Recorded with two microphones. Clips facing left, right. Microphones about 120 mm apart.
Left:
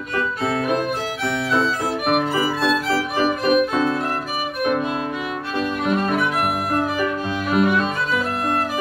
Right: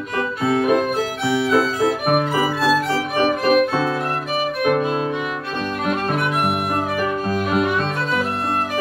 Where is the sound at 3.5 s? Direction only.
30° right (ahead or behind).